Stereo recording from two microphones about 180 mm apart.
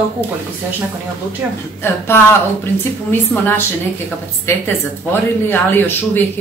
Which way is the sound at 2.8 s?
10° left (ahead or behind).